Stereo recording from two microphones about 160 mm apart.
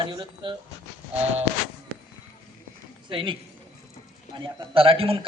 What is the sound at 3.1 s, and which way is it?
A man's voice, 35° right (ahead or behind).